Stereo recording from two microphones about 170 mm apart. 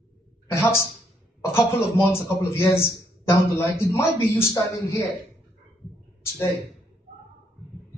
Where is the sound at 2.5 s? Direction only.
15° left (ahead or behind).